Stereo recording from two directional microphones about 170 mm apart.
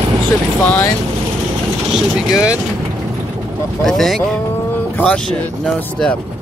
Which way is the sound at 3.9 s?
Centre (ahead or behind).